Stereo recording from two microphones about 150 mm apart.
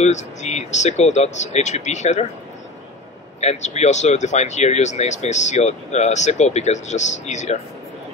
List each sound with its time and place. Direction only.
0.0 s speech: 50° left (ahead or behind)
3.3 s speech: 50° left (ahead or behind)